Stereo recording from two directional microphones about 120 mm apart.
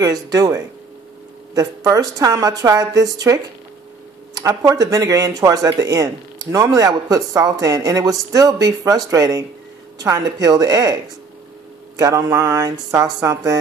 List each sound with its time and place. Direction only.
0.0 s speech: 30° right (ahead or behind)
4.4 s speech: 30° right (ahead or behind)
12.0 s speech: 25° right (ahead or behind)